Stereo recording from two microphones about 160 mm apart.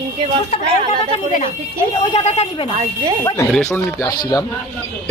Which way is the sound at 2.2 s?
40° left (ahead or behind).